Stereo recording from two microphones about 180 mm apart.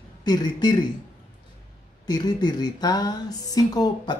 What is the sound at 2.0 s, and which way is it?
Speech, 25° left (ahead or behind).